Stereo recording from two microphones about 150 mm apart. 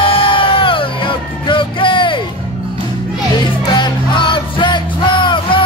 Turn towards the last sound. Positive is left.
turn(degrees=35)  # may be behind; listen again after turning